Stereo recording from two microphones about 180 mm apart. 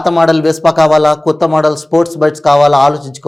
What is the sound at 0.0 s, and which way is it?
Speech, centre (ahead or behind).